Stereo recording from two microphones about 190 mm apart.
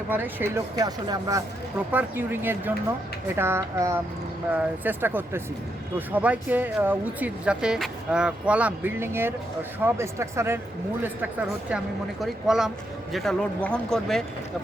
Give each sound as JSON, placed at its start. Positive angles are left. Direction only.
{"t": 0.1, "sound": "speech", "side_deg": -10}
{"t": 1.9, "sound": "speech", "side_deg": -10}